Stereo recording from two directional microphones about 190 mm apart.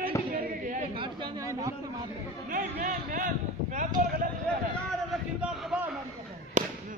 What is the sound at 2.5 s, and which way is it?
Speech, 45° right (ahead or behind).